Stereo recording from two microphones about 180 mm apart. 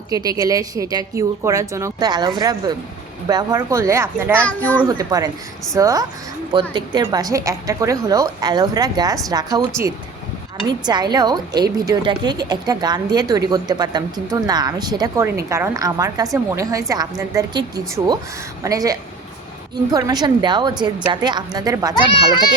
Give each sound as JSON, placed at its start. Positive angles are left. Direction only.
{"t": 0.1, "sound": "a woman's voice", "side_deg": -20}
{"t": 4.4, "sound": "speech", "side_deg": 10}
{"t": 4.9, "sound": "a woman's voice", "side_deg": -20}